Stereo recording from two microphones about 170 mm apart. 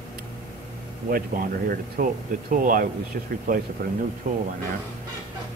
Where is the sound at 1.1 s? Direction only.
60° right (ahead or behind).